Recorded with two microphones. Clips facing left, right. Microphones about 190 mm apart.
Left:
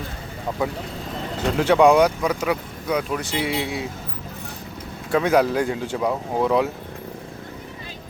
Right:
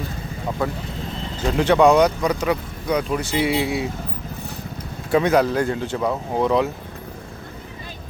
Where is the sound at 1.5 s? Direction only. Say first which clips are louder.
Even; 10° left (ahead or behind).